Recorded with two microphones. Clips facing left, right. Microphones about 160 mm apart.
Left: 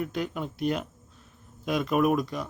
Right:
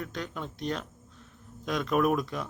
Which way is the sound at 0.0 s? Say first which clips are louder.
Left 5 dB; 10° left (ahead or behind).